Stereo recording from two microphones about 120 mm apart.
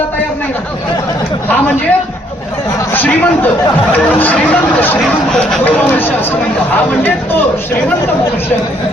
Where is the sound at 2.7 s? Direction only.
15° left (ahead or behind).